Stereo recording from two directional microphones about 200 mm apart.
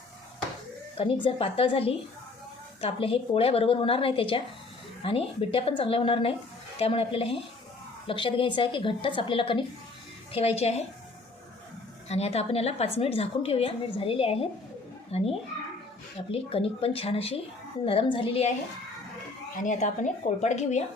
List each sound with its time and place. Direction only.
0.9 s a woman's voice: 25° left (ahead or behind)
12.0 s a woman's voice: 30° left (ahead or behind)
16.3 s a woman's voice: 30° left (ahead or behind)
19.5 s speech: 40° left (ahead or behind)